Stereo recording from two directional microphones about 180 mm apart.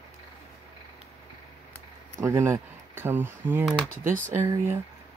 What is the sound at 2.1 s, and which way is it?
Speech, 15° right (ahead or behind).